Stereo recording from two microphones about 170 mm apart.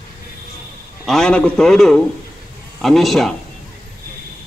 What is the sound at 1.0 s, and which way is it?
A man's voice, 5° left (ahead or behind).